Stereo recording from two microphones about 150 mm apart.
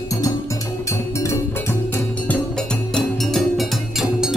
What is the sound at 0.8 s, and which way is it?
Music, 20° left (ahead or behind).